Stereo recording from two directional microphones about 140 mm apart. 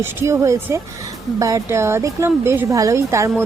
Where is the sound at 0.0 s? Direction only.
15° right (ahead or behind).